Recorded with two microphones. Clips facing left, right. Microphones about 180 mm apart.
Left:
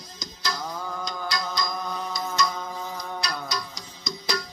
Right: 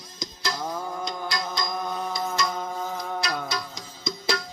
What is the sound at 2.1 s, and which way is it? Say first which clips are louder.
Music: left 3 dB; 25° right (ahead or behind).